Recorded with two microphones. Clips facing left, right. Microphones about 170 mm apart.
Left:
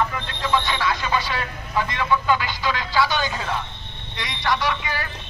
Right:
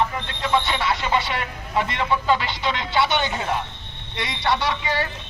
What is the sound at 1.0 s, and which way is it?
A man's voice, 25° right (ahead or behind).